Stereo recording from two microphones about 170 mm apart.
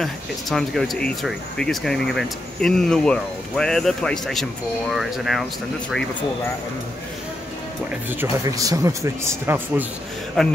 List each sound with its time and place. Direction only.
0.0 s speech: centre (ahead or behind)
8.1 s speech: 15° right (ahead or behind)
10.4 s speech: centre (ahead or behind)